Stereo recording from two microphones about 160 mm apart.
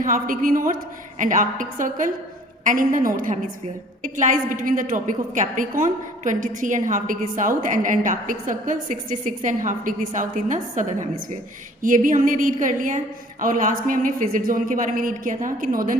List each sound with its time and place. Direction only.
0.0 s a woman's voice: 55° right (ahead or behind)